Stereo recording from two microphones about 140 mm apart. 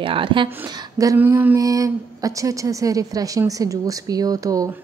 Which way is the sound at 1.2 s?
15° right (ahead or behind).